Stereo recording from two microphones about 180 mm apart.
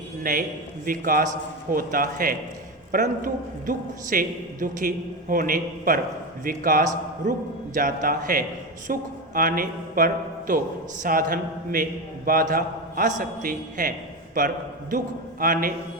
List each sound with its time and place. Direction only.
0.2 s a man's voice: 50° right (ahead or behind)